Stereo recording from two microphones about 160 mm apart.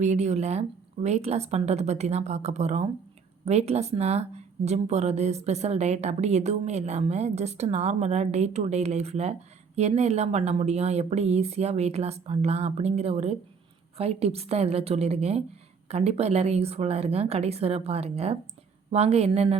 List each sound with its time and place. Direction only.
0.0 s speech: 45° right (ahead or behind)